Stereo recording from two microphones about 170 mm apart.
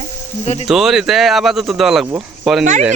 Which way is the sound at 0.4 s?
40° left (ahead or behind).